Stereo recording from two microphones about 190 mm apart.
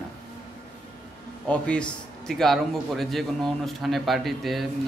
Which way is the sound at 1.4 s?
5° left (ahead or behind).